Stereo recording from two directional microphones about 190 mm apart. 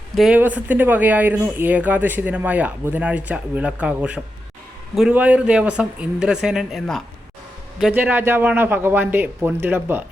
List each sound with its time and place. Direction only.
0.2 s speech: 5° right (ahead or behind)